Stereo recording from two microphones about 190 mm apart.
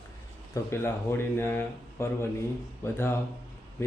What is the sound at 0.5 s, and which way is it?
Speech, 15° left (ahead or behind).